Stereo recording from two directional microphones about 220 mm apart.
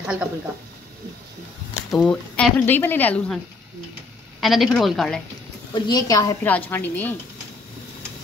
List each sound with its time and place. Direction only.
0.0 s speech: 5° right (ahead or behind)
1.9 s speech: 5° left (ahead or behind)
4.4 s a woman's voice: centre (ahead or behind)
5.9 s speech: 15° left (ahead or behind)